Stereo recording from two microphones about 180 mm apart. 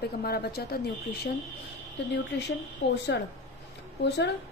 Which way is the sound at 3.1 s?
70° left (ahead or behind).